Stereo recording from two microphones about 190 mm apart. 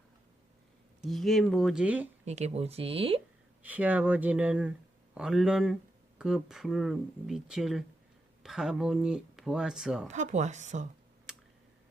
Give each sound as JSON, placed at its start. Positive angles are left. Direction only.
{"t": 1.0, "sound": "speech", "side_deg": 0}
{"t": 2.2, "sound": "speech", "side_deg": -35}
{"t": 3.6, "sound": "speech", "side_deg": -10}
{"t": 10.1, "sound": "speech", "side_deg": -40}